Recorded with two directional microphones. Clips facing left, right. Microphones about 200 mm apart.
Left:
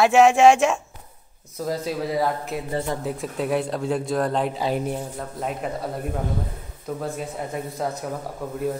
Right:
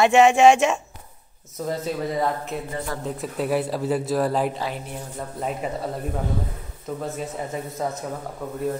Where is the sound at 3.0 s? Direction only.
Centre (ahead or behind).